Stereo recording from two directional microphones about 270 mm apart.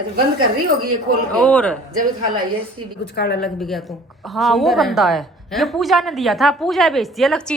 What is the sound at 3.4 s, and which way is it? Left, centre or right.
A woman's voice, centre.